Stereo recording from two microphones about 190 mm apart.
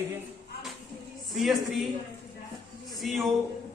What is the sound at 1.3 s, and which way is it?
Speech, centre (ahead or behind).